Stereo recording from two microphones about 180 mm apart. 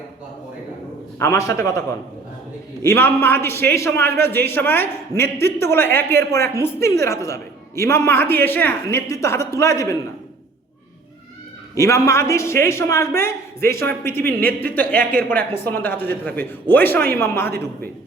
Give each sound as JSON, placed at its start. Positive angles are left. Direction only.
{"t": 1.2, "sound": "a man's voice", "side_deg": 15}
{"t": 2.8, "sound": "a man's voice", "side_deg": 15}
{"t": 11.7, "sound": "a man's voice", "side_deg": 15}